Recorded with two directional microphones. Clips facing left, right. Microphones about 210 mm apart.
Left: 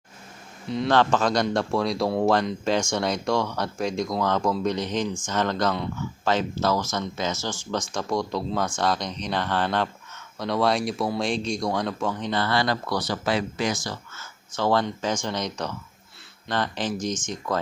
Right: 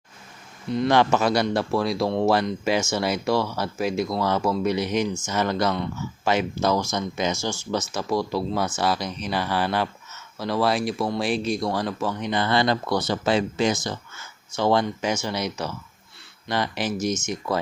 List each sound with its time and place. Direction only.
0.9 s speech: 10° right (ahead or behind)
12.3 s speech: 20° right (ahead or behind)